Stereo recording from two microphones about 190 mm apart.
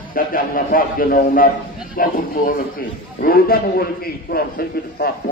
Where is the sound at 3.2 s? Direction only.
50° left (ahead or behind).